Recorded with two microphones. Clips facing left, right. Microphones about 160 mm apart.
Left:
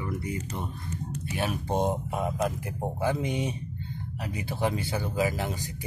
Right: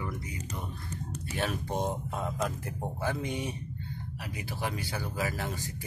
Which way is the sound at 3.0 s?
20° left (ahead or behind).